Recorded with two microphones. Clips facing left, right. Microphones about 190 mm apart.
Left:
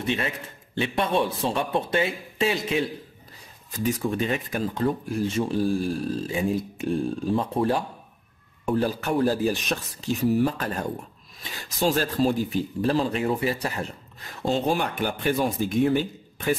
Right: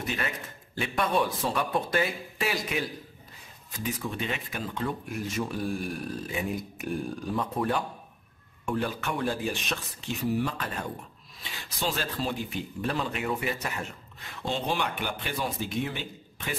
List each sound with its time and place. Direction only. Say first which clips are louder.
0.0 s speech: left 5 dB; 30° left (ahead or behind)
3.7 s speech: left 8 dB; 40° left (ahead or behind)